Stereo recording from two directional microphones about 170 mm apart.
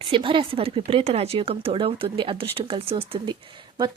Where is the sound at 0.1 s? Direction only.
30° right (ahead or behind).